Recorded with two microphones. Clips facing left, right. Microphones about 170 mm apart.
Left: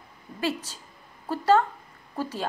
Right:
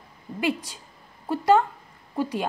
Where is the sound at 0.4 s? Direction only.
15° right (ahead or behind).